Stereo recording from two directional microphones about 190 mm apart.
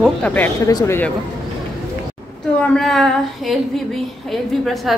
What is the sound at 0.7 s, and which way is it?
Speech, 20° left (ahead or behind).